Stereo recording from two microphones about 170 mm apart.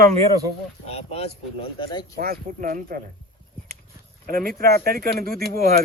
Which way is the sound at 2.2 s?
55° right (ahead or behind).